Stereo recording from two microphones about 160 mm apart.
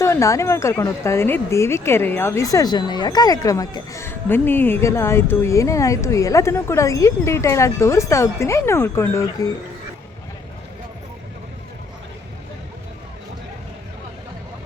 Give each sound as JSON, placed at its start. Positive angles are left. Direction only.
{"t": 0.0, "sound": "speech", "side_deg": 20}